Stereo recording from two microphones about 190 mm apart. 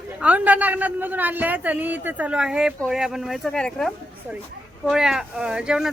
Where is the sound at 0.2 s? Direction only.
5° right (ahead or behind).